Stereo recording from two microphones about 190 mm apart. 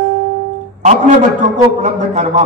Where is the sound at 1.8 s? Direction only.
40° right (ahead or behind).